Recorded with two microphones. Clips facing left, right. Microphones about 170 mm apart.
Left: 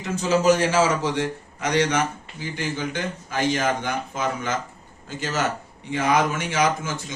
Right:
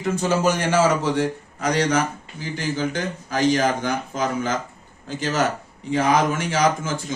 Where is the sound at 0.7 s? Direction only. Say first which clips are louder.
Right 2 dB; 55° right (ahead or behind).